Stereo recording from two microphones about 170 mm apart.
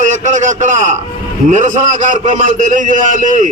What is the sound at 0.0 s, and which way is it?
A man's voice, 45° right (ahead or behind).